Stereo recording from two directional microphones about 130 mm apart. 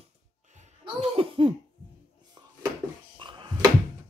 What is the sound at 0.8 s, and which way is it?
Laughter, 50° right (ahead or behind).